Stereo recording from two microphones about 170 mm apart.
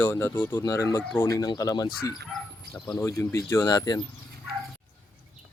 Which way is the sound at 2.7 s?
10° left (ahead or behind).